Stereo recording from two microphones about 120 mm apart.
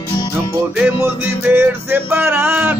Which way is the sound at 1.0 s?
20° right (ahead or behind).